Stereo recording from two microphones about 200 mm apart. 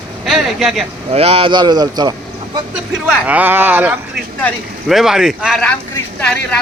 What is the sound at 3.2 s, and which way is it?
Speech, 10° right (ahead or behind).